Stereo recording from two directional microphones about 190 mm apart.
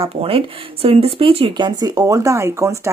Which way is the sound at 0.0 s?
30° right (ahead or behind).